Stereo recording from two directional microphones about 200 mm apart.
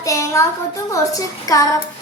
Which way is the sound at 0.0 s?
15° left (ahead or behind).